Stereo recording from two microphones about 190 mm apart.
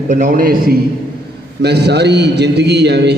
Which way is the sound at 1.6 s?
60° right (ahead or behind).